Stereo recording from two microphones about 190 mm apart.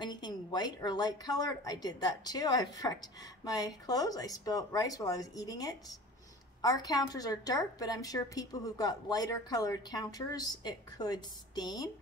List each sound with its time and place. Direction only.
0.0 s a woman's voice: 25° left (ahead or behind)